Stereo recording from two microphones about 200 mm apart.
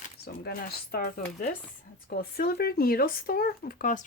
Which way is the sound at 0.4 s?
45° left (ahead or behind).